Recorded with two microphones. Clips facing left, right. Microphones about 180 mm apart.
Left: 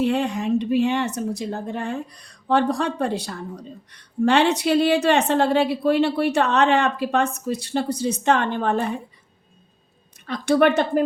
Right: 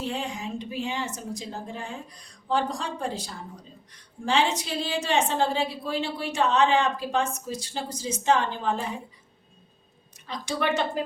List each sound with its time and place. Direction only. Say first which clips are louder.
0.0 s speech: left 10 dB; 65° left (ahead or behind)
10.2 s speech: left 10 dB; 60° left (ahead or behind)